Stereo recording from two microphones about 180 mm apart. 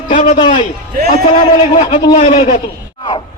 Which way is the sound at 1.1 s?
40° left (ahead or behind).